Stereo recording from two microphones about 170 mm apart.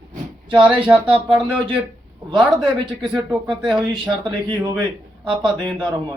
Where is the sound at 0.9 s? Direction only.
5° right (ahead or behind).